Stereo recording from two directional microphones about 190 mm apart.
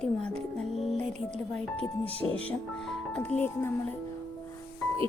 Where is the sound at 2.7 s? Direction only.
5° left (ahead or behind).